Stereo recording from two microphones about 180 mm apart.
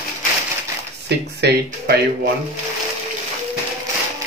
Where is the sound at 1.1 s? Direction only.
65° right (ahead or behind).